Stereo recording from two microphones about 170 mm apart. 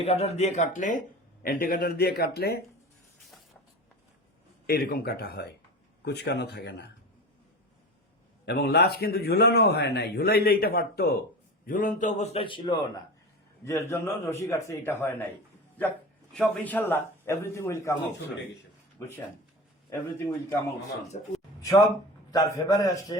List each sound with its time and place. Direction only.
0.0 s a man's voice: 35° left (ahead or behind); by 2.6 s 65° left (ahead or behind)
4.6 s speech: 65° left (ahead or behind)
8.4 s speech: 75° left (ahead or behind)
11.6 s a man's voice: 55° left (ahead or behind); by 12.8 s 30° left (ahead or behind)
13.7 s a man's voice: 15° left (ahead or behind)
16.3 s a man's voice: 10° left (ahead or behind)
18.9 s a man's voice: 15° left (ahead or behind)
21.1 s a man's voice: 45° left (ahead or behind)
21.6 s a man's voice: 20° left (ahead or behind)